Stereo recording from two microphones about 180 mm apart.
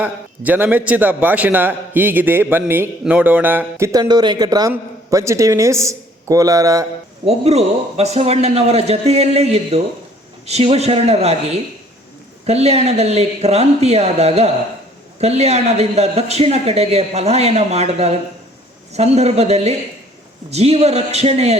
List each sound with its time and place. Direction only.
0.0 s a man's voice: 10° right (ahead or behind)
7.3 s speech: 35° right (ahead or behind)